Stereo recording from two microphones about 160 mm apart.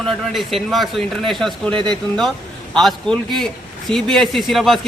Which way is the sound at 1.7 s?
30° right (ahead or behind).